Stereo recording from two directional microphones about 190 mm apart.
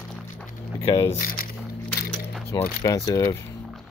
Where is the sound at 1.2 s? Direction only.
50° left (ahead or behind).